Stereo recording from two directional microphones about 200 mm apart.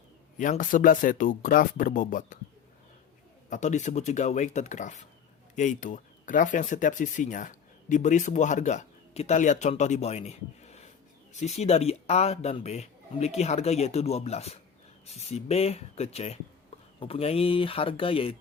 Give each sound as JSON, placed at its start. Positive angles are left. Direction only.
{"t": 0.3, "sound": "speech", "side_deg": 40}
{"t": 3.5, "sound": "speech", "side_deg": 35}